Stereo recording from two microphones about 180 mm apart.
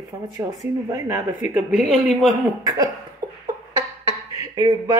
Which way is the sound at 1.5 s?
Centre (ahead or behind).